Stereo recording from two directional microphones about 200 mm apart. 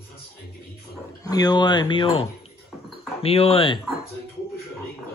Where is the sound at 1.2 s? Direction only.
20° left (ahead or behind).